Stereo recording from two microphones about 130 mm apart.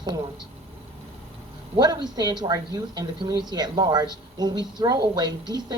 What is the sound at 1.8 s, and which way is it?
Speech, 30° right (ahead or behind).